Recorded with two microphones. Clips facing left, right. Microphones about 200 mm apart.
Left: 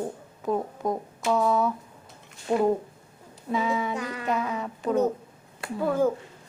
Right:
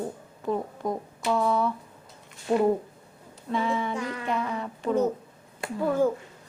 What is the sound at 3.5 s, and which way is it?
Speech, centre (ahead or behind).